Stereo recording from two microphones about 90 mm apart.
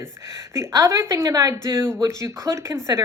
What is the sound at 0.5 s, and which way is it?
A woman's voice, 35° right (ahead or behind).